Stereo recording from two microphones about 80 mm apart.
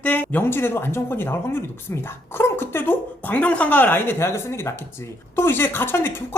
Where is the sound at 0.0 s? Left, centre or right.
Left.